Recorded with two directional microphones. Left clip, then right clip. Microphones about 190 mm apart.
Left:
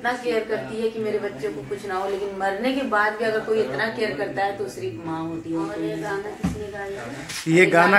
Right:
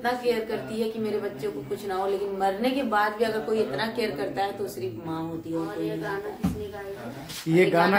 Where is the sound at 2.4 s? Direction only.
35° right (ahead or behind).